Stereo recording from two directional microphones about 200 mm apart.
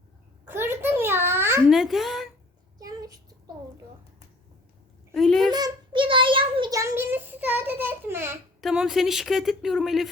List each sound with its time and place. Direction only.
0.4 s babbling: 10° right (ahead or behind)
1.7 s speech: centre (ahead or behind)
2.7 s child singing: 20° right (ahead or behind)
5.1 s a woman's voice: centre (ahead or behind)
5.5 s child singing: 20° right (ahead or behind)
8.6 s speech: 5° right (ahead or behind)